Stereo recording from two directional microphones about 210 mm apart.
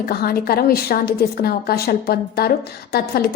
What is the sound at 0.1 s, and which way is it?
A woman's voice, 45° left (ahead or behind).